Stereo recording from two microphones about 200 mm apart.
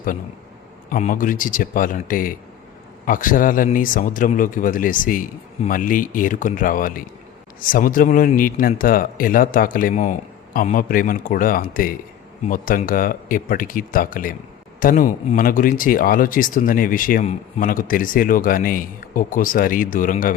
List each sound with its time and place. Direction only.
0.9 s speech: 40° left (ahead or behind)